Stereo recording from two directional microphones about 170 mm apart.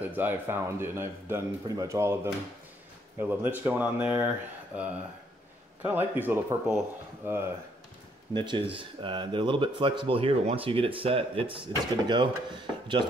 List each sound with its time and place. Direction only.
0.0 s speech: 10° right (ahead or behind)
8.3 s speech: 30° right (ahead or behind)